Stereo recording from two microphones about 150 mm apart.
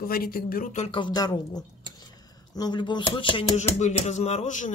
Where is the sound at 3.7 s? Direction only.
50° left (ahead or behind).